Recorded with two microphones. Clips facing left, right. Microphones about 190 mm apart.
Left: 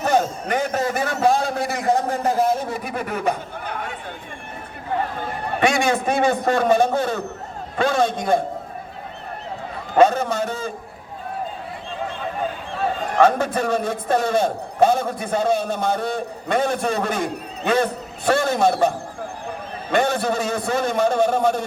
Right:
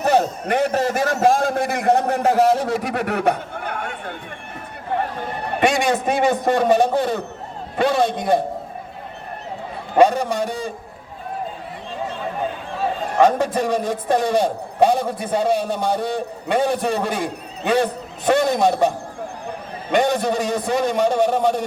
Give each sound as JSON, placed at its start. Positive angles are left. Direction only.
{"t": 0.0, "sound": "a man's voice", "side_deg": -35}
{"t": 5.5, "sound": "a man's voice", "side_deg": -20}
{"t": 9.9, "sound": "a man's voice", "side_deg": -15}
{"t": 13.1, "sound": "a man's voice", "side_deg": -15}
{"t": 18.3, "sound": "a man's voice", "side_deg": -20}
{"t": 19.9, "sound": "a man's voice", "side_deg": -15}